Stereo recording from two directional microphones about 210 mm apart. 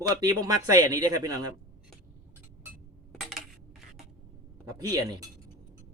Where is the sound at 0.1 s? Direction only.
15° right (ahead or behind).